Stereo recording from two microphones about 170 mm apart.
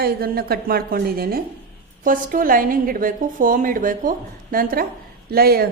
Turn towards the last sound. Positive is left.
turn(degrees=-65)  # may be behind; listen again after turning